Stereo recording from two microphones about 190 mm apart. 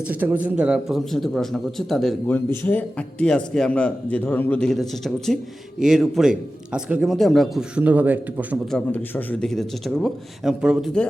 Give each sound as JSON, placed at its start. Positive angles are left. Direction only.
{"t": 0.1, "sound": "a man's voice", "side_deg": -10}
{"t": 8.7, "sound": "a man's voice", "side_deg": 10}